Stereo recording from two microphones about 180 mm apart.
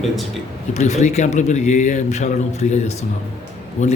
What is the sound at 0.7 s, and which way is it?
A man's voice, 40° left (ahead or behind).